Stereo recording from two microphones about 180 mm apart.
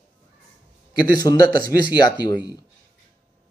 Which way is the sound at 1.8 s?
25° left (ahead or behind).